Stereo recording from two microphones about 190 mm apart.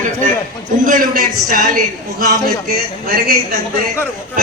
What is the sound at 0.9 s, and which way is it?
Speech, 45° right (ahead or behind).